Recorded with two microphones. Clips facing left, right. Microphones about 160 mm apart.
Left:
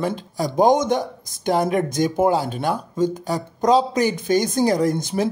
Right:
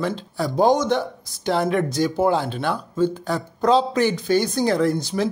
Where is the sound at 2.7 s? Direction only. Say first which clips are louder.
Even; 10° left (ahead or behind).